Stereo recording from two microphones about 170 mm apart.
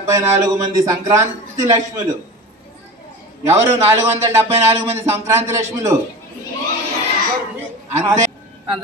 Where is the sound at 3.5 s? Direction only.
15° right (ahead or behind).